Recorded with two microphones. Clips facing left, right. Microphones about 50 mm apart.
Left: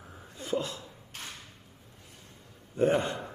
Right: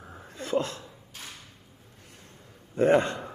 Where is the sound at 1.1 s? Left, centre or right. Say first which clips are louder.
Left 1 dB; left.